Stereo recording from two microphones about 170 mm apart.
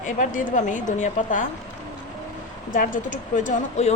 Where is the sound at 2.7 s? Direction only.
50° left (ahead or behind).